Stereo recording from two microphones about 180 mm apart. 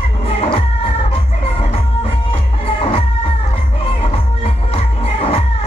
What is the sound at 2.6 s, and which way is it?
Music, 30° left (ahead or behind).